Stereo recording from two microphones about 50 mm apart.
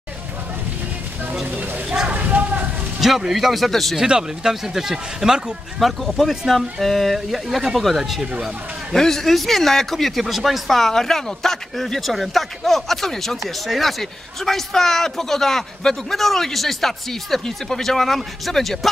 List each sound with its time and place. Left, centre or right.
1.5 s a sound: right
3.0 s speech: centre
3.9 s a man's voice: centre
8.9 s a man's voice: centre